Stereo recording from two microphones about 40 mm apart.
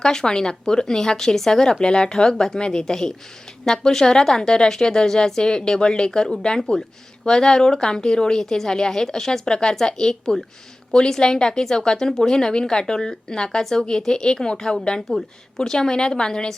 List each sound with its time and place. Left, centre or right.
0.0 s a woman's voice: centre